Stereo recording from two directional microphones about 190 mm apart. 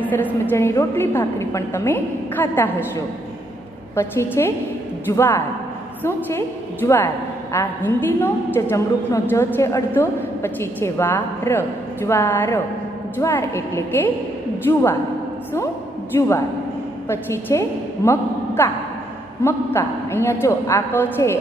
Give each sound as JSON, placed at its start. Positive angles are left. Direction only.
{"t": 0.0, "sound": "a woman's voice", "side_deg": 10}
{"t": 3.9, "sound": "a woman's voice", "side_deg": 15}
{"t": 16.2, "sound": "a woman's voice", "side_deg": 15}